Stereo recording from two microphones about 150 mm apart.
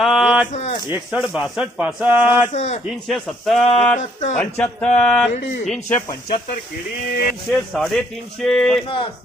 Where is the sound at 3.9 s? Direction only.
50° left (ahead or behind).